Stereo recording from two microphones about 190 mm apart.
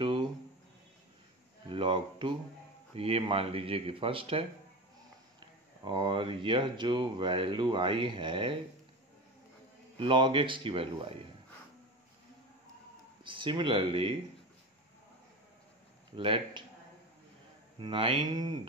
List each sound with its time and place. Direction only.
0.0 s a sound: 25° right (ahead or behind)
1.7 s speech: 25° right (ahead or behind)
5.9 s speech: 25° right (ahead or behind)
9.9 s speech: 25° right (ahead or behind)
13.2 s speech: 25° right (ahead or behind)
16.2 s speech: 25° right (ahead or behind)
17.7 s speech: 25° right (ahead or behind)